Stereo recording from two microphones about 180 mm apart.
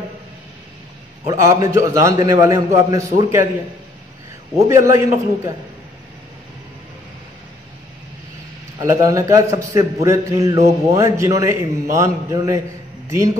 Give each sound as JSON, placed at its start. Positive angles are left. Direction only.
{"t": 1.2, "sound": "a man's voice", "side_deg": -15}
{"t": 4.6, "sound": "a man's voice", "side_deg": -15}
{"t": 8.7, "sound": "a man's voice", "side_deg": -20}